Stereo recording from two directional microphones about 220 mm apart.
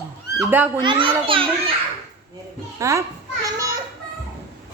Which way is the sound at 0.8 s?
20° right (ahead or behind).